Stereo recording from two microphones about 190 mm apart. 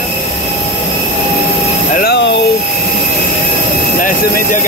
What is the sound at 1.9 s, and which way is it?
Vehicle, 55° left (ahead or behind).